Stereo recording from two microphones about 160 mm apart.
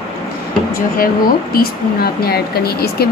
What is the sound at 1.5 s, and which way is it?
A woman's voice, 70° left (ahead or behind).